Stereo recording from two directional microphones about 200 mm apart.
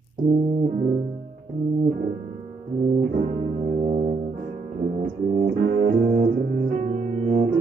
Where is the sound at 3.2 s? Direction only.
40° right (ahead or behind).